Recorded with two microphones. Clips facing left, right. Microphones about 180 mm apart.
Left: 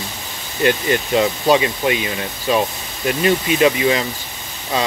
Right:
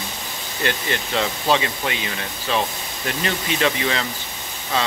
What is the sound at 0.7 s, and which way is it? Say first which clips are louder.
Speech: left 8 dB; 15° left (ahead or behind).